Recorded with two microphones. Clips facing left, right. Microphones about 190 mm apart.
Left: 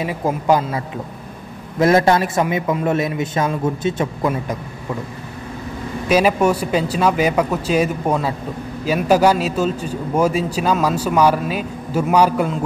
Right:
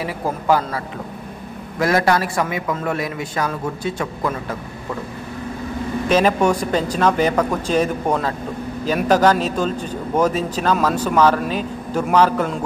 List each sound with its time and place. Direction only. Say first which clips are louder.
0.0 s a man's voice: left 3 dB; 20° left (ahead or behind)
6.0 s a man's voice: left 1 dB; 10° left (ahead or behind)